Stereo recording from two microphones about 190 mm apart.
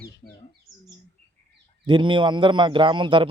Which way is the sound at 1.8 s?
25° right (ahead or behind).